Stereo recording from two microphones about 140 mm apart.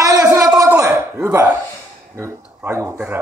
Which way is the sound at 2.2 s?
20° right (ahead or behind).